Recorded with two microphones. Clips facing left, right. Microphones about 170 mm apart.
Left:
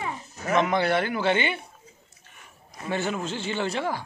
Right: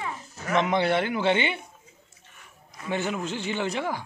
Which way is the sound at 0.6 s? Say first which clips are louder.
Even; 20° right (ahead or behind).